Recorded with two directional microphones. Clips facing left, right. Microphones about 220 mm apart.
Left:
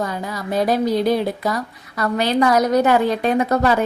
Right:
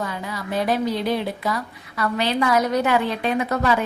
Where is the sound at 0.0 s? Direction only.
40° left (ahead or behind).